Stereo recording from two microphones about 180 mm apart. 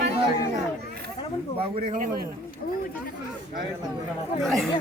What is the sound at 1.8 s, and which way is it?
Speech, 50° right (ahead or behind).